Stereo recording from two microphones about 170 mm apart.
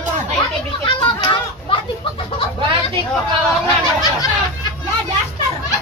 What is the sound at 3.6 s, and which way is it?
Speech, 25° left (ahead or behind).